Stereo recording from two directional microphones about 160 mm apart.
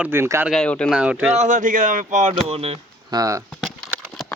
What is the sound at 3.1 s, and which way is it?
Speech, 20° right (ahead or behind).